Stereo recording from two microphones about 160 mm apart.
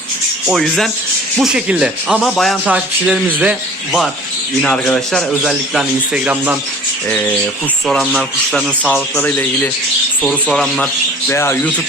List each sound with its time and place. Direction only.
0.4 s speech: centre (ahead or behind)
4.6 s speech: 5° left (ahead or behind); by 6.6 s 10° right (ahead or behind)
7.1 s speech: 10° left (ahead or behind)
7.9 s speech: centre (ahead or behind); by 11.7 s 15° left (ahead or behind)